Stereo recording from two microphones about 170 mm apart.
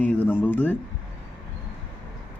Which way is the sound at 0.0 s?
10° left (ahead or behind).